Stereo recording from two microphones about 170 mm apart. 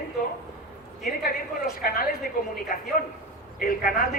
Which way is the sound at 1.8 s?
60° left (ahead or behind).